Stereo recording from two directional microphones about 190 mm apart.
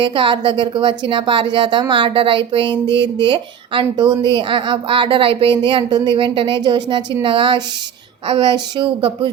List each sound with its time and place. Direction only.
0.0 s a woman's voice: 25° right (ahead or behind)